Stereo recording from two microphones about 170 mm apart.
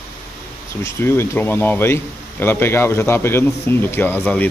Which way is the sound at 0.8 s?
15° left (ahead or behind).